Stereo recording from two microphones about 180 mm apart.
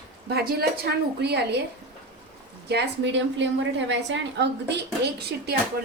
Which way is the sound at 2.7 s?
75° right (ahead or behind).